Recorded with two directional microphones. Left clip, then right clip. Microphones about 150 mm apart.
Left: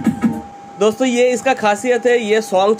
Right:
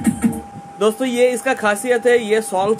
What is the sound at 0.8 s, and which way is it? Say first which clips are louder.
A man's voice: left 2 dB; 10° left (ahead or behind).